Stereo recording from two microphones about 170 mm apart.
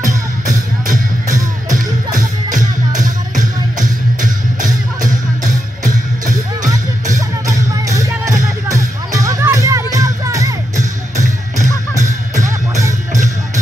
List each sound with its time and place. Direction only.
0.8 s music: 50° right (ahead or behind)
7.2 s music: 20° right (ahead or behind)
11.1 s music: 45° right (ahead or behind)